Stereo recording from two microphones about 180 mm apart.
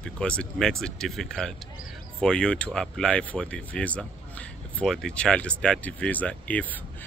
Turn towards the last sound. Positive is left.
turn(degrees=10)  # may be behind; listen again after turning